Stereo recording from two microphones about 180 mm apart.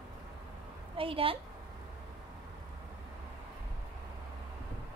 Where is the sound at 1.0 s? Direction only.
30° right (ahead or behind).